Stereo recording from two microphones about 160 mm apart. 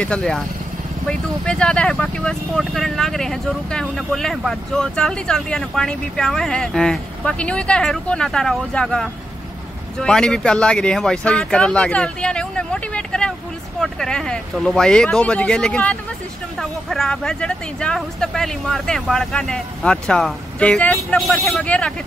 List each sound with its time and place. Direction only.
0.0 s speech: 5° left (ahead or behind)